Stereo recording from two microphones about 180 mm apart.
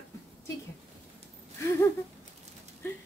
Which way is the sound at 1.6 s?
15° left (ahead or behind).